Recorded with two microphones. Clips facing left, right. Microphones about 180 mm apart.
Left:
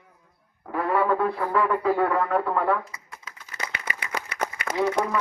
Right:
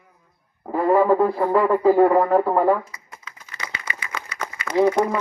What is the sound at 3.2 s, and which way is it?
Typewriter, 45° left (ahead or behind).